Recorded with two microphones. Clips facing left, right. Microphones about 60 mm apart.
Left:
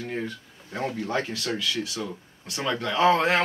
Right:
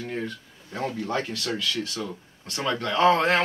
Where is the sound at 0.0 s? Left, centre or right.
Centre.